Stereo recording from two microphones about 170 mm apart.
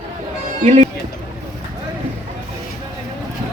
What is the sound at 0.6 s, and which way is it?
Speech, 45° right (ahead or behind).